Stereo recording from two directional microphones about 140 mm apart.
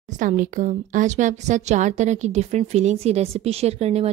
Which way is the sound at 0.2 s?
65° right (ahead or behind).